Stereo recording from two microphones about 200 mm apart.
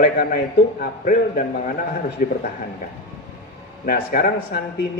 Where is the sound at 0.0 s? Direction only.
45° left (ahead or behind).